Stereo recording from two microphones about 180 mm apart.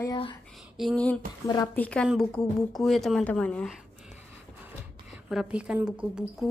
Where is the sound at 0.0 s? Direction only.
25° left (ahead or behind).